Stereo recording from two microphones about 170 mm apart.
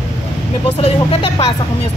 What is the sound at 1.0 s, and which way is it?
Speech, 30° left (ahead or behind).